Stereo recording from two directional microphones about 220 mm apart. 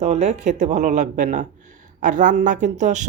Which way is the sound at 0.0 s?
30° right (ahead or behind).